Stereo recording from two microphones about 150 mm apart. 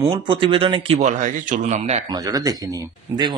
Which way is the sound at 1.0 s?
55° right (ahead or behind).